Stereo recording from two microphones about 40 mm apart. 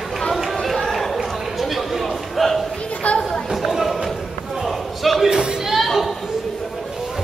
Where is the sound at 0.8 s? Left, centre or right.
Centre.